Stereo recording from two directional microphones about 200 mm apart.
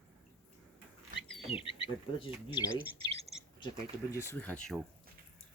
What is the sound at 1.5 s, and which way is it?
Speech, 25° left (ahead or behind).